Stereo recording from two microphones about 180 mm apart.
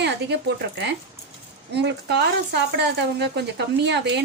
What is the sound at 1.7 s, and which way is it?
Speech, 70° right (ahead or behind).